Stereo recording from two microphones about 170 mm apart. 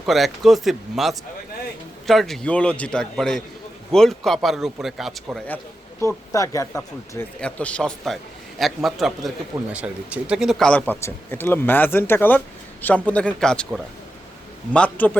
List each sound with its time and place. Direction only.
0.0 s a man's voice: centre (ahead or behind)
6.0 s speech: 15° left (ahead or behind)
7.4 s a man's voice: 5° left (ahead or behind)